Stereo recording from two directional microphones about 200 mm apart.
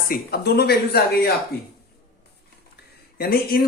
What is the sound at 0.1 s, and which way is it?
Speech, 50° left (ahead or behind).